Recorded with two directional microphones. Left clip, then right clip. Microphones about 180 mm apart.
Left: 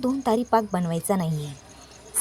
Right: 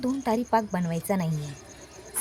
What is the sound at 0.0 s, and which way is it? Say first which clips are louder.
Speech: left 4 dB; 20° left (ahead or behind).